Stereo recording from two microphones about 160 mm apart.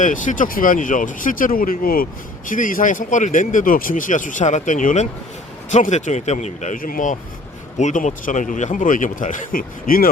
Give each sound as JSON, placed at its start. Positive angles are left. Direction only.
{"t": 0.0, "sound": "speech", "side_deg": 55}